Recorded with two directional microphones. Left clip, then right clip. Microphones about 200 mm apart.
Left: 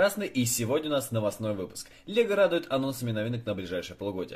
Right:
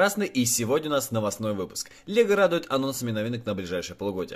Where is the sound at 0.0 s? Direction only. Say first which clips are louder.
Right 2 dB; 35° right (ahead or behind).